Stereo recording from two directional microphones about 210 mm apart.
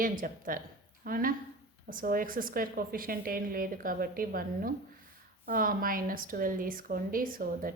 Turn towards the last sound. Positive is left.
turn(degrees=-40)  # may be behind; listen again after turning